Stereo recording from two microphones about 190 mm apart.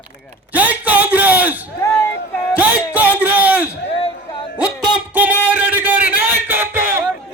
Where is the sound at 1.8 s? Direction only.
15° left (ahead or behind).